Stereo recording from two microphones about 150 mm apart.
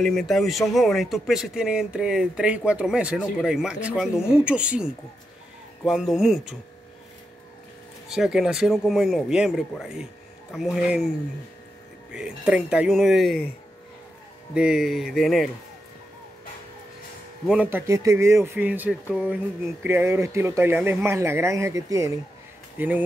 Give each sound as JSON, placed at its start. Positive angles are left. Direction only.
{"t": 0.0, "sound": "speech", "side_deg": 0}
{"t": 8.1, "sound": "speech", "side_deg": -5}
{"t": 12.1, "sound": "speech", "side_deg": -5}
{"t": 14.5, "sound": "speech", "side_deg": -5}
{"t": 17.5, "sound": "speech", "side_deg": -10}